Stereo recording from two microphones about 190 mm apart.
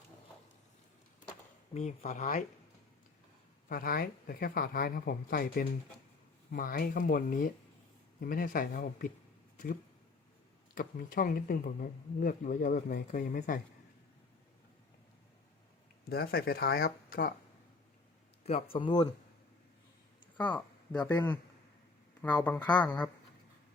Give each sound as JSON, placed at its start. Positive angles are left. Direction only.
{"t": 1.7, "sound": "speech", "side_deg": 40}
{"t": 3.7, "sound": "speech", "side_deg": 50}
{"t": 10.8, "sound": "speech", "side_deg": 45}
{"t": 16.0, "sound": "speech", "side_deg": 55}
{"t": 18.4, "sound": "speech", "side_deg": 30}
{"t": 20.3, "sound": "speech", "side_deg": 10}
{"t": 22.2, "sound": "speech", "side_deg": 10}